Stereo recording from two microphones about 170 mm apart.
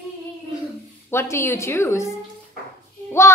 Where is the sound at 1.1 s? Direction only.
15° left (ahead or behind).